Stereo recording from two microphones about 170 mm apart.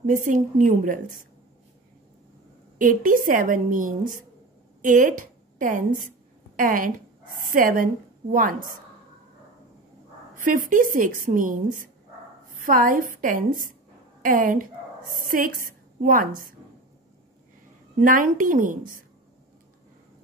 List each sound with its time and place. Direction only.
0.0 s a woman's voice: 50° right (ahead or behind)
2.8 s a woman's voice: 50° right (ahead or behind)
10.4 s a woman's voice: 50° right (ahead or behind)
18.0 s a woman's voice: 50° right (ahead or behind)